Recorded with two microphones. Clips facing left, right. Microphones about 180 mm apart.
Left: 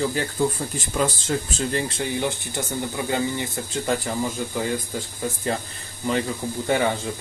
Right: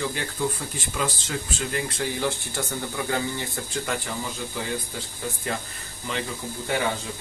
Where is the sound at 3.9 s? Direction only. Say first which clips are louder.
Left 7 dB; 30° left (ahead or behind).